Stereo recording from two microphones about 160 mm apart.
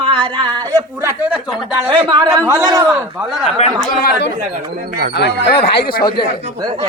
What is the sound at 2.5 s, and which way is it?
Speech, 20° right (ahead or behind).